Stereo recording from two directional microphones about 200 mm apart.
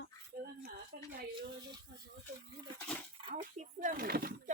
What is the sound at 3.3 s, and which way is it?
Speech, 40° right (ahead or behind).